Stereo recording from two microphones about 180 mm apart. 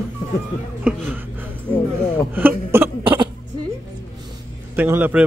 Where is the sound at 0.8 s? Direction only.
10° right (ahead or behind).